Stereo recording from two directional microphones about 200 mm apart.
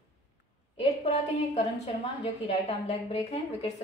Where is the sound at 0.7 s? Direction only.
35° left (ahead or behind).